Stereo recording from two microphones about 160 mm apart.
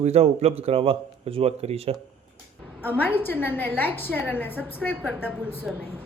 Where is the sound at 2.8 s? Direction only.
10° left (ahead or behind).